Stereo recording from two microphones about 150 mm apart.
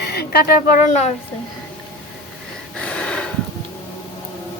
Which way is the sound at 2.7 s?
10° left (ahead or behind).